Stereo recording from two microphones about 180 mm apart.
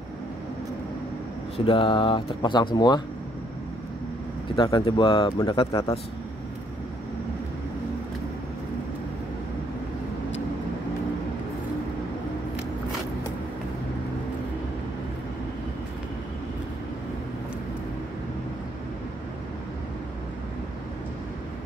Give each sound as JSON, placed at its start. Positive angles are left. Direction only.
{"t": 1.6, "sound": "speech", "side_deg": 30}
{"t": 4.6, "sound": "speech", "side_deg": 25}